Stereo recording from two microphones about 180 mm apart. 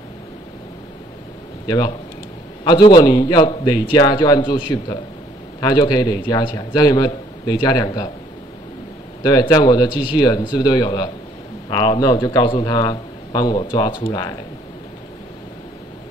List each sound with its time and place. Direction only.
2.6 s a man's voice: 25° left (ahead or behind)
9.2 s a man's voice: 25° left (ahead or behind)